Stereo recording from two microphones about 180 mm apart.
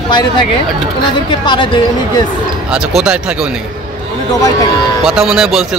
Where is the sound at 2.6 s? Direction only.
5° right (ahead or behind).